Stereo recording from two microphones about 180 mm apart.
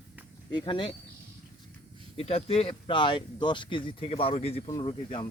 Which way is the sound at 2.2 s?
30° left (ahead or behind).